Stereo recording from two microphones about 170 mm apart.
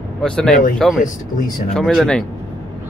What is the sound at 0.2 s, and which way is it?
Speech, 5° left (ahead or behind).